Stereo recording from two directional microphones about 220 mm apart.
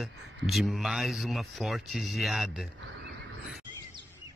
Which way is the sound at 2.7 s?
55° right (ahead or behind).